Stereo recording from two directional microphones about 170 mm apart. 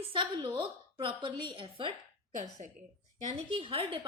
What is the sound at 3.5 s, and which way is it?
Speech, 30° right (ahead or behind).